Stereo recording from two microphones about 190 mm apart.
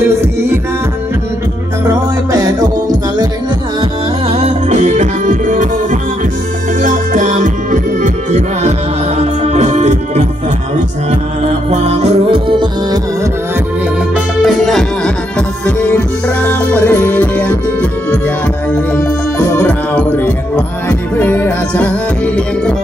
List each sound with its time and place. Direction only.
1.9 s music: 15° right (ahead or behind)
4.3 s music: 35° right (ahead or behind)
9.2 s organ: 35° right (ahead or behind)
11.4 s music: 35° right (ahead or behind)
14.1 s music: centre (ahead or behind)
18.9 s music: 10° left (ahead or behind)